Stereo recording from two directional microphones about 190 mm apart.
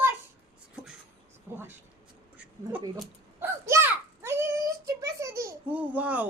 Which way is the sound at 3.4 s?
15° right (ahead or behind).